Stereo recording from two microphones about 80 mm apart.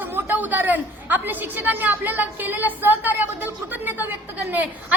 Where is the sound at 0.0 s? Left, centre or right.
Right.